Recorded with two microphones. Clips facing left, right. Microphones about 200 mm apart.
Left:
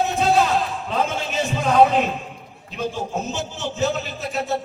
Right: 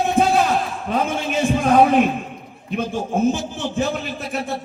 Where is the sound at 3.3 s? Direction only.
55° right (ahead or behind).